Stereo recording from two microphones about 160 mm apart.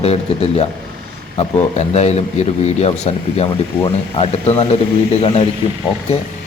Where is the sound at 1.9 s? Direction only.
40° left (ahead or behind).